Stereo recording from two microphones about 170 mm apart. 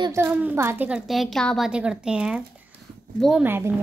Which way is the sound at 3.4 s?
10° right (ahead or behind).